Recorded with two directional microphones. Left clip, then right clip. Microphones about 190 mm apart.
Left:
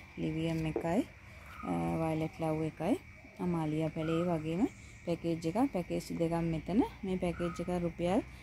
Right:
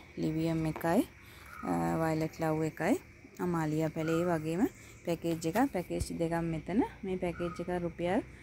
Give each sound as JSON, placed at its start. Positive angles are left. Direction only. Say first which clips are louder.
{"t": 0.5, "sound": "a woman's voice", "louder": "right 2 dB", "side_deg": -20}